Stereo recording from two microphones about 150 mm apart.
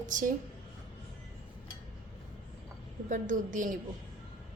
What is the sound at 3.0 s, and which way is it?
Speech, 60° right (ahead or behind).